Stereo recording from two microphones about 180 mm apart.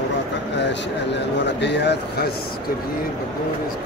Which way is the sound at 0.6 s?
75° left (ahead or behind).